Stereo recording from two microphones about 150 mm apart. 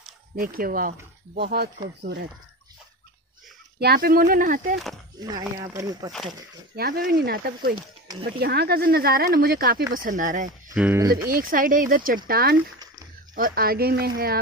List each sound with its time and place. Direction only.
0.4 s speech: 75° right (ahead or behind)
3.8 s speech: 85° right
5.2 s speech: 25° right (ahead or behind)
6.7 s speech: 90° right
9.9 s speech: 65° right (ahead or behind)
10.7 s speech: 10° right (ahead or behind)
11.0 s speech: 25° right (ahead or behind)
11.2 s speech: 70° right (ahead or behind)
12.3 s speech: 90° right
13.3 s speech: 75° right (ahead or behind); by 14.4 s 90° right